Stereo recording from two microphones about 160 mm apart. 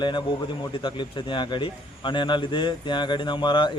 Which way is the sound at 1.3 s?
30° left (ahead or behind).